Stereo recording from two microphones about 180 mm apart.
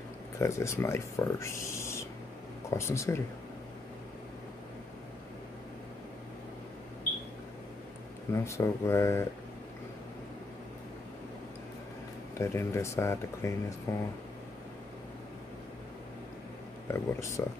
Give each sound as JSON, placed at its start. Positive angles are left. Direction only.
{"t": 0.4, "sound": "speech", "side_deg": 15}
{"t": 8.3, "sound": "speech", "side_deg": 15}
{"t": 12.4, "sound": "speech", "side_deg": 15}
{"t": 16.8, "sound": "speech", "side_deg": 15}